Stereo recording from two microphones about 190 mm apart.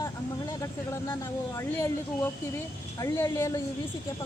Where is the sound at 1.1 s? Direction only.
15° left (ahead or behind).